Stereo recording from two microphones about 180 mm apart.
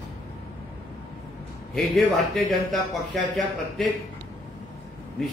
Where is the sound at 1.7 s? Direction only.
Centre (ahead or behind).